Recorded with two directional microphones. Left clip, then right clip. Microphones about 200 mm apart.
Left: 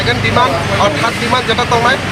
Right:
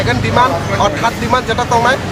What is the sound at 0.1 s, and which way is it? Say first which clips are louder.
Speech: even; 30° right (ahead or behind).